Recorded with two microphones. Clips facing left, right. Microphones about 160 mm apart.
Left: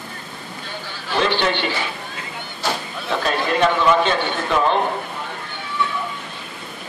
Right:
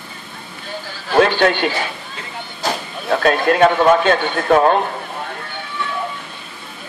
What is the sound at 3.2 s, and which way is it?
A man's voice, 55° right (ahead or behind).